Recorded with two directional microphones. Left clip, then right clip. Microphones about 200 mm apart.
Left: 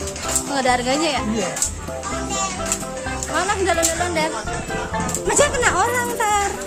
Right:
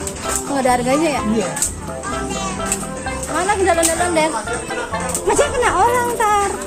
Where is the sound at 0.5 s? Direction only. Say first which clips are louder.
Right 3 dB; 5° left (ahead or behind).